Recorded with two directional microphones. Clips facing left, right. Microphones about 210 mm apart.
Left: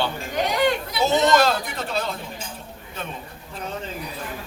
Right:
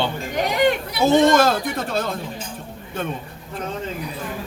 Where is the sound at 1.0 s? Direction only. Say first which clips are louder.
Right 4 dB; 50° right (ahead or behind).